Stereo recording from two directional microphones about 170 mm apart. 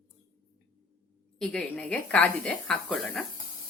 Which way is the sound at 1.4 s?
5° left (ahead or behind).